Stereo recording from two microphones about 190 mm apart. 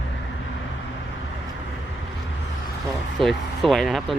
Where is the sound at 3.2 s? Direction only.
Centre (ahead or behind).